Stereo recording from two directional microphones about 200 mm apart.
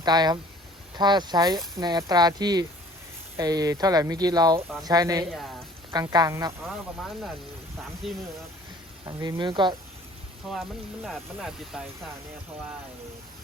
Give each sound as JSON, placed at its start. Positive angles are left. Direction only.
{"t": 0.0, "sound": "speech", "side_deg": -20}
{"t": 9.0, "sound": "speech", "side_deg": -20}
{"t": 10.5, "sound": "speech", "side_deg": 0}